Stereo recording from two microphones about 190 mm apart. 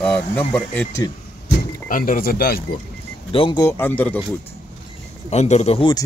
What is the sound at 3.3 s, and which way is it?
Speech, 25° left (ahead or behind).